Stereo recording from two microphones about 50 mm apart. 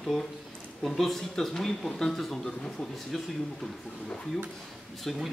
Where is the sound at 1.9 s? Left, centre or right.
Centre.